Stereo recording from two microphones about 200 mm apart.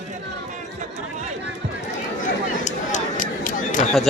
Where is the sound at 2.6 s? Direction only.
40° left (ahead or behind).